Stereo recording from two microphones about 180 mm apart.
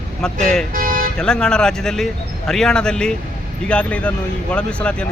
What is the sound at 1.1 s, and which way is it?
A man's voice, 5° left (ahead or behind).